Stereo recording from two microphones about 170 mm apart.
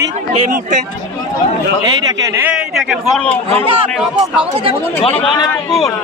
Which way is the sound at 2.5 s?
Centre (ahead or behind).